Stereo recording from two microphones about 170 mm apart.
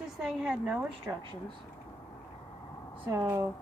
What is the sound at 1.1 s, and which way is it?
Speech, 15° right (ahead or behind).